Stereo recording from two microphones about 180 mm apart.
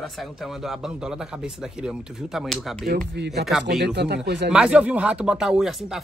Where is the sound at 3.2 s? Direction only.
70° right (ahead or behind).